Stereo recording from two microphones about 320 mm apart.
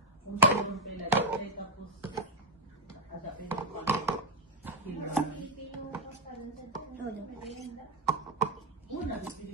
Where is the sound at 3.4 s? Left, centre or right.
Centre.